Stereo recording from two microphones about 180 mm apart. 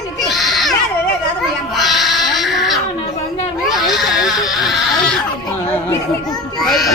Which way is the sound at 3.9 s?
Centre (ahead or behind).